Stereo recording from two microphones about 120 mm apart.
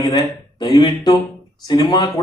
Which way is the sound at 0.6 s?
35° left (ahead or behind).